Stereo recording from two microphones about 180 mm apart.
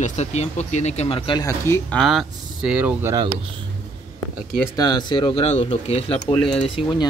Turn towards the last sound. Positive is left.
turn(degrees=30)  # may be behind; listen again after turning